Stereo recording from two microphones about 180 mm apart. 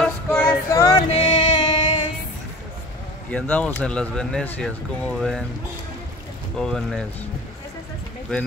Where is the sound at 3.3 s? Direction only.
10° left (ahead or behind).